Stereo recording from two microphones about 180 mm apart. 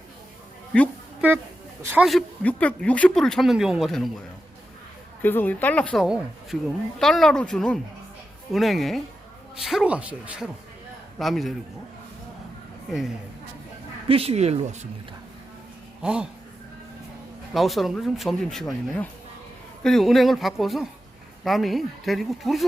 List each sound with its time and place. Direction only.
1.8 s a man's voice: 10° right (ahead or behind)
2.0 s speech: 5° left (ahead or behind)
5.2 s speech: 10° left (ahead or behind)
14.1 s speech: 35° right (ahead or behind)
16.0 s speech: 5° right (ahead or behind)
17.5 s speech: centre (ahead or behind)